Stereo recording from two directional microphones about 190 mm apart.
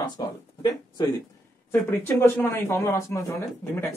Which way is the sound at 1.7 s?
10° left (ahead or behind).